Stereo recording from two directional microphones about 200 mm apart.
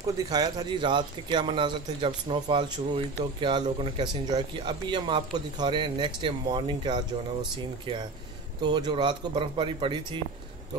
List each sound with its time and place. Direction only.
0.0 s speech: 20° right (ahead or behind)
8.5 s speech: 20° right (ahead or behind)